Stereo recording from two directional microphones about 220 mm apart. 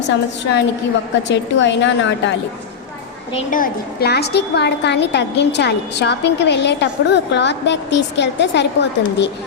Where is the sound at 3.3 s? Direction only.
40° left (ahead or behind).